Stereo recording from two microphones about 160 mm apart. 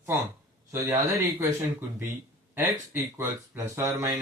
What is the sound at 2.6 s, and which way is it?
Speech, 15° right (ahead or behind).